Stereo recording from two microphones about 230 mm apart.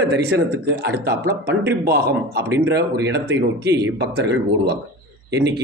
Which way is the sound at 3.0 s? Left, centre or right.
Right.